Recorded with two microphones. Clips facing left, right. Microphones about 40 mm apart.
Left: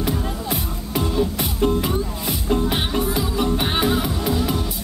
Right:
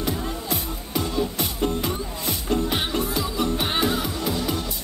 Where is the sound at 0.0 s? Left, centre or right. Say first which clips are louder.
Left 3 dB; centre.